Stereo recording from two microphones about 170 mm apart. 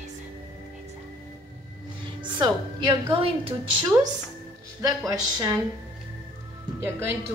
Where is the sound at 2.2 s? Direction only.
25° right (ahead or behind).